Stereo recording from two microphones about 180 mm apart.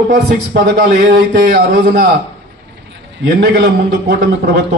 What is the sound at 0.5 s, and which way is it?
A man's voice, 60° right (ahead or behind).